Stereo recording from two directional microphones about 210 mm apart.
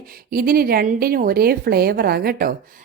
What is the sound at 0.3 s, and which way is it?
A woman's voice, 45° right (ahead or behind).